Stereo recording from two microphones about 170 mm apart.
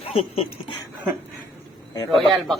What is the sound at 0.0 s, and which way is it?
Speech, 35° left (ahead or behind).